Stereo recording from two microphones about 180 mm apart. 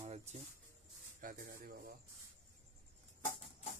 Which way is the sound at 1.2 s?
50° right (ahead or behind).